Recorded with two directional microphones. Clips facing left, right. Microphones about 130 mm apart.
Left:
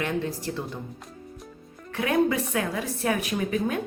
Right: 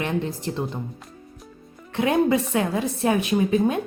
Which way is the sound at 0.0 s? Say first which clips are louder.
Right 2 dB; 25° right (ahead or behind).